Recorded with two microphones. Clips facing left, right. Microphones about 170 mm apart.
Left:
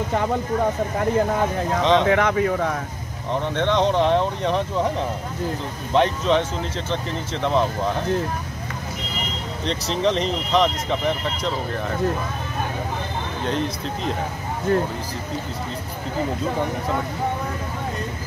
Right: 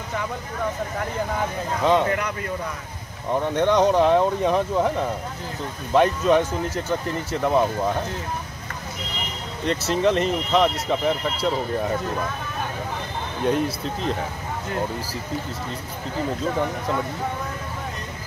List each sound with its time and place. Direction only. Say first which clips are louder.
1.8 s speech: left 1 dB; 10° right (ahead or behind)
2.0 s speech: left 7 dB; 90° left
3.3 s speech: right 2 dB; 10° right (ahead or behind)
5.9 s speech: right 1 dB; 5° right (ahead or behind)
9.7 s speech: right 2 dB; 5° right (ahead or behind)
13.5 s speech: right 3 dB; 5° right (ahead or behind)